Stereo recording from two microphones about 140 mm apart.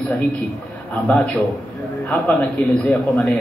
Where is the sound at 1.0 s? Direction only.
10° left (ahead or behind).